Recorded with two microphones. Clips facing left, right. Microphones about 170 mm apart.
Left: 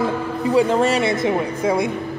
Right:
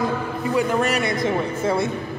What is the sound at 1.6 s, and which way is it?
Speech, 15° left (ahead or behind).